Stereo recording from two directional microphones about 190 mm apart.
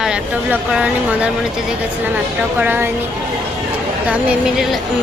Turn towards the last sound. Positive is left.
turn(degrees=-5)  # may be behind; listen again after turning